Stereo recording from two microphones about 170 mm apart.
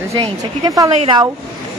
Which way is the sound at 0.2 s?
20° right (ahead or behind).